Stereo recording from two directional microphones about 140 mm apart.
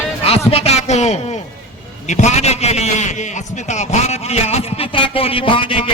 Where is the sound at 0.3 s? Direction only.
45° left (ahead or behind).